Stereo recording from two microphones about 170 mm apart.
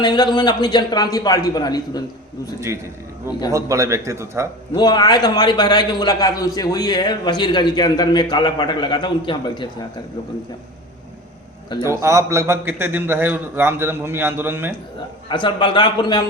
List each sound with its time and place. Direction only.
0.0 s a man's voice: 25° left (ahead or behind)
3.5 s a man's voice: 20° right (ahead or behind)
4.7 s a man's voice: 25° left (ahead or behind)
11.8 s a man's voice: 15° right (ahead or behind)
15.3 s a man's voice: 30° left (ahead or behind)